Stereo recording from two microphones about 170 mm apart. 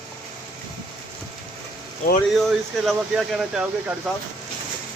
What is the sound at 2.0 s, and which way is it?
Speech, 50° left (ahead or behind).